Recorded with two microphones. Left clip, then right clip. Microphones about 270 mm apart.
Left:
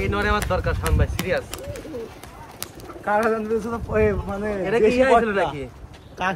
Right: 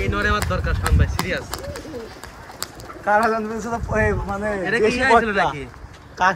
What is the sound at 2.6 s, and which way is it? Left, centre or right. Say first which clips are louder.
Pigeon: right 3 dB; centre.